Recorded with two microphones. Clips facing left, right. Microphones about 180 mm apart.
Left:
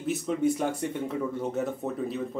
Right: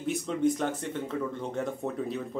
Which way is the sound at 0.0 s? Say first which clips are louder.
Left 1 dB; 5° left (ahead or behind).